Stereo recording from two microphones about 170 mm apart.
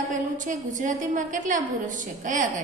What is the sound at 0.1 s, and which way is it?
A woman's voice, 50° right (ahead or behind).